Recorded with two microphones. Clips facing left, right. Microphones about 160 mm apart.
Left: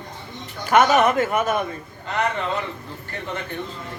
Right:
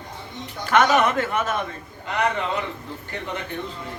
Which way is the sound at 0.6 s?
10° left (ahead or behind).